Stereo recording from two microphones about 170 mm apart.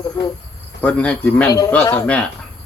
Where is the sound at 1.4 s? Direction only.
20° left (ahead or behind).